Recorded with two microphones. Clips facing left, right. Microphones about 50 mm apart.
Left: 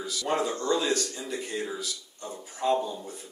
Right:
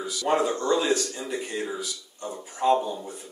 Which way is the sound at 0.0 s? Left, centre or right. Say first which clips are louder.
Right 4 dB; centre.